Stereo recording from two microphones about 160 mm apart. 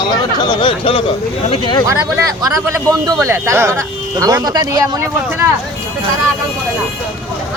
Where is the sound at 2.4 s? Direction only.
20° right (ahead or behind).